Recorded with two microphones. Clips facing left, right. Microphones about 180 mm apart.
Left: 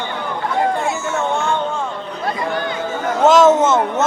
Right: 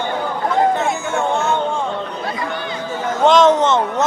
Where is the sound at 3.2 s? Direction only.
5° left (ahead or behind).